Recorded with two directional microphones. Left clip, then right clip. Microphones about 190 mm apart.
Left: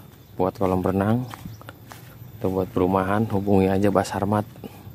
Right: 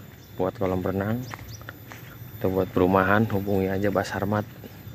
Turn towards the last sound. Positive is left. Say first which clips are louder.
# left 4 dB
turn(degrees=25)  # may be behind; listen again after turning